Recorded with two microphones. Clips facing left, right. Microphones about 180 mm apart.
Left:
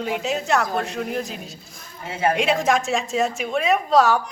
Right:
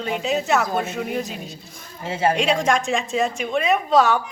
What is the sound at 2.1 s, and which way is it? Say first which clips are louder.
Speech: right 1 dB; 30° right (ahead or behind).